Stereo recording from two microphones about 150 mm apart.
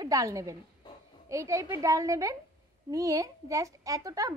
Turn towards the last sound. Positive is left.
turn(degrees=-20)  # may be behind; listen again after turning